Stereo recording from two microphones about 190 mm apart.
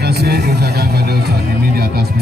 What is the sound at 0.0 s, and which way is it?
Speech, 55° right (ahead or behind).